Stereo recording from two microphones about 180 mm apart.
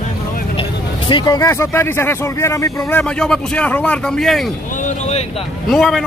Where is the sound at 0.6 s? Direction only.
25° left (ahead or behind); by 4.5 s centre (ahead or behind).